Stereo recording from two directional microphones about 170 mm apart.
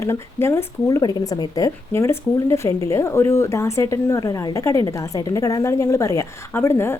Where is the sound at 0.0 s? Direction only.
15° left (ahead or behind).